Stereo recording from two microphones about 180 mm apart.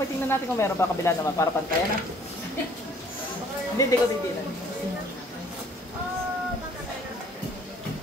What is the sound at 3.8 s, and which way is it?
Speech, 20° left (ahead or behind).